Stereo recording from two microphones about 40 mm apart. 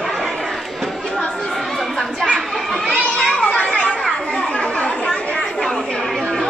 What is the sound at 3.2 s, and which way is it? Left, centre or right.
Children playing, centre.